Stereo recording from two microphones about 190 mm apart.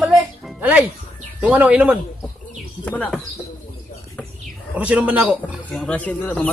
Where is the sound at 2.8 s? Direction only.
5° left (ahead or behind).